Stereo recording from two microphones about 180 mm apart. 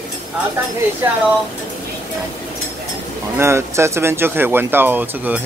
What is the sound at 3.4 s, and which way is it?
Speech, 15° right (ahead or behind).